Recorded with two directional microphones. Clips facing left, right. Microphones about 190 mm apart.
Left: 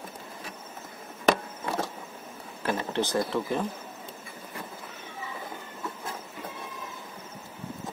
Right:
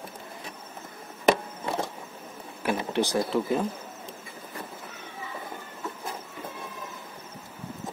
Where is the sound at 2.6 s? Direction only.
15° right (ahead or behind).